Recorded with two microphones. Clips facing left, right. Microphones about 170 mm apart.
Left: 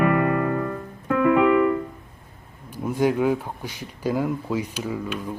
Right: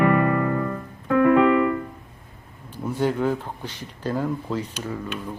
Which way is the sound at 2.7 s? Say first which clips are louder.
Left 2 dB; 10° left (ahead or behind).